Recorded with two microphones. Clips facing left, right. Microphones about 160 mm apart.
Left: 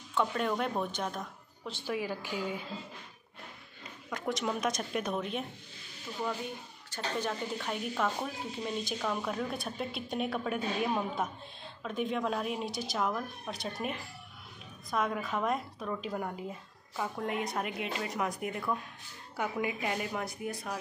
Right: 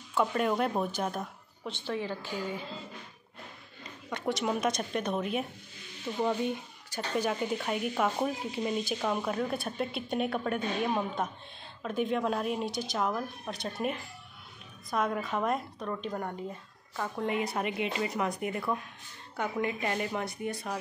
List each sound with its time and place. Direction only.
0.1 s a woman's voice: 5° right (ahead or behind)
1.9 s a woman's voice: 10° left (ahead or behind)
4.1 s speech: 5° right (ahead or behind)
6.1 s speech: 40° right (ahead or behind)
6.9 s speech: 10° right (ahead or behind)